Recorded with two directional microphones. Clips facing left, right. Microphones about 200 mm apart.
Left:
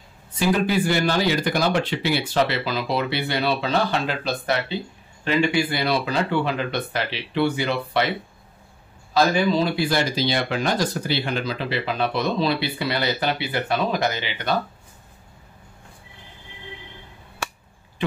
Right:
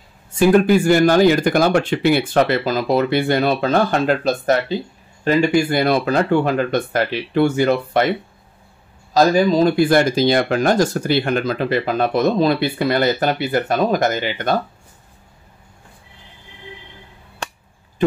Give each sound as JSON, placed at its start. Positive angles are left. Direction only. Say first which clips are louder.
{"t": 0.3, "sound": "speech", "louder": "right 8 dB", "side_deg": -50}
{"t": 9.1, "sound": "speech", "louder": "right 5 dB", "side_deg": -40}